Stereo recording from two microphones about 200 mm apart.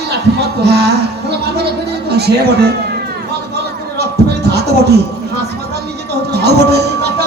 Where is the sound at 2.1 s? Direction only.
55° right (ahead or behind).